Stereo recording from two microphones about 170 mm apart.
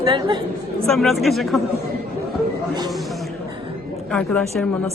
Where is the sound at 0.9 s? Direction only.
Centre (ahead or behind).